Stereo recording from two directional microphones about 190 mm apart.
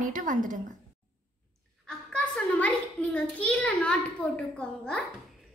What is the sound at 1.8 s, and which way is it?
A child's voice, 5° left (ahead or behind).